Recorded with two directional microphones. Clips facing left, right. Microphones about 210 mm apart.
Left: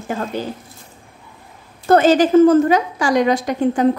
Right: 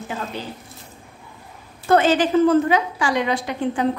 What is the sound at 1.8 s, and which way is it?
A woman's voice, 40° left (ahead or behind).